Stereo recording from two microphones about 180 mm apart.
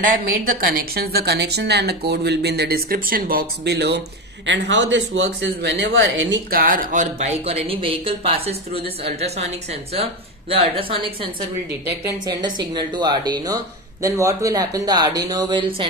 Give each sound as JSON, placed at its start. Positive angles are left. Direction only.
{"t": 0.0, "sound": "speech", "side_deg": -50}
{"t": 4.5, "sound": "speech", "side_deg": -85}
{"t": 6.5, "sound": "speech", "side_deg": -55}
{"t": 10.5, "sound": "speech", "side_deg": -30}
{"t": 12.0, "sound": "speech", "side_deg": -20}